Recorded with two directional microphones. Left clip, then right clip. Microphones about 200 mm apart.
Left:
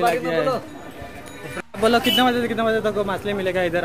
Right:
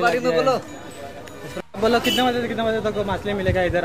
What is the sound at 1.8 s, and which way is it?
A man's voice, 10° left (ahead or behind).